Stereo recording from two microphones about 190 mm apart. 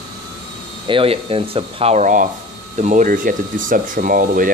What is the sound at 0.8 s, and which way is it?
Speech, 30° right (ahead or behind).